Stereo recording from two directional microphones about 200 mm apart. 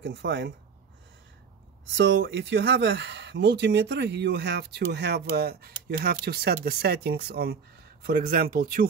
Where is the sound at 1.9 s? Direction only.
70° right (ahead or behind).